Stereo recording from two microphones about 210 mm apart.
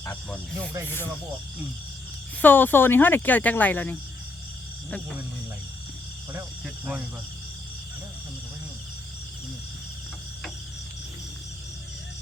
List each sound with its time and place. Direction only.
0.0 s speech: 10° left (ahead or behind)
2.4 s speech: 10° left (ahead or behind)